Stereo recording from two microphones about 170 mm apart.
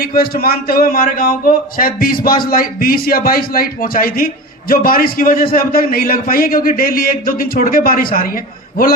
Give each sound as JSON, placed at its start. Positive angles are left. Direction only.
{"t": 0.0, "sound": "a man's voice", "side_deg": 60}